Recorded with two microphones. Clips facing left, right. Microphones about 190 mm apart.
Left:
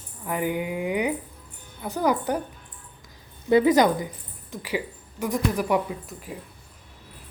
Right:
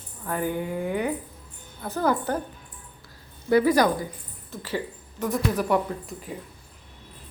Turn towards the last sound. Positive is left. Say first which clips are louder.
# right 1 dB
turn(degrees=0)  # may be behind; listen again after turning